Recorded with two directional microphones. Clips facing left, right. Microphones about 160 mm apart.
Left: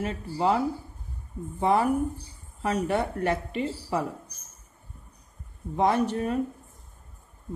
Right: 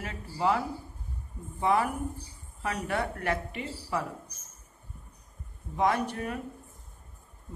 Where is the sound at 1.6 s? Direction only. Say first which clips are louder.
Left 4 dB; 30° left (ahead or behind).